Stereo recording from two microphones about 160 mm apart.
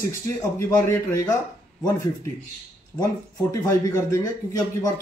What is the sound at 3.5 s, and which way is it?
Speech, 20° left (ahead or behind).